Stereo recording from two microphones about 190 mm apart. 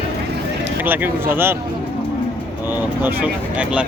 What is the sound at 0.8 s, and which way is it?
Speech, 10° right (ahead or behind).